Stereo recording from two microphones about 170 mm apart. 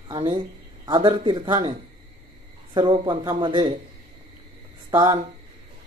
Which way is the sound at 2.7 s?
25° right (ahead or behind).